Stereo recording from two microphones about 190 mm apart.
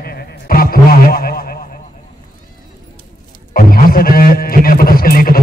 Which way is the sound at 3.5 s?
50° left (ahead or behind).